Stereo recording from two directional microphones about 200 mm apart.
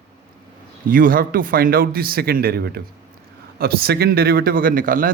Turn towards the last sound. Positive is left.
turn(degrees=-45)  # may be behind; listen again after turning